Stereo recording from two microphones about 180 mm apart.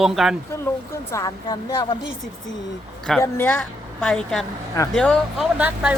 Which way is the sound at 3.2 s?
10° left (ahead or behind).